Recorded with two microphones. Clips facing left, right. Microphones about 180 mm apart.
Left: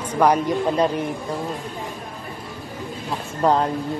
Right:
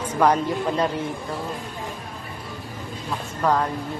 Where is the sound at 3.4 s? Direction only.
25° left (ahead or behind).